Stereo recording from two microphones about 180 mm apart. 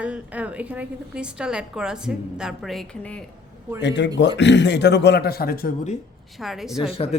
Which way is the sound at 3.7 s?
75° left (ahead or behind).